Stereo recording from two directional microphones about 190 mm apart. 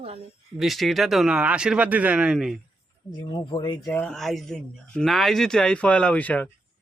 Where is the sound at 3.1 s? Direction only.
20° left (ahead or behind).